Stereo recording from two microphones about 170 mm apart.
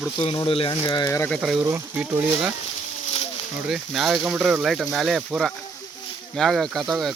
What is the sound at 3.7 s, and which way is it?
Speech, centre (ahead or behind).